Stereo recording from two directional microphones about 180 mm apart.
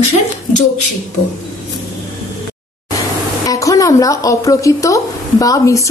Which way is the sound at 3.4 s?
20° left (ahead or behind).